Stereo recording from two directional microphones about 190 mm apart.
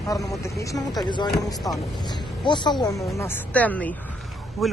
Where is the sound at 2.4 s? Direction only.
25° left (ahead or behind).